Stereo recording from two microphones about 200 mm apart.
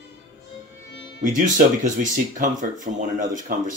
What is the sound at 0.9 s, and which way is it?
Music, 60° left (ahead or behind).